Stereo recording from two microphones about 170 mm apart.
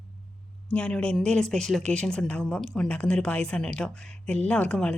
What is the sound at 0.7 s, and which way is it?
Speech, 5° left (ahead or behind).